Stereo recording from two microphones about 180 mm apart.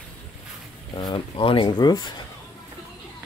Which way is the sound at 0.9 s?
25° left (ahead or behind).